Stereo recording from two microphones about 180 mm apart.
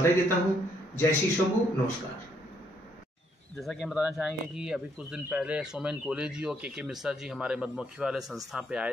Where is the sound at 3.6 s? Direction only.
Centre (ahead or behind).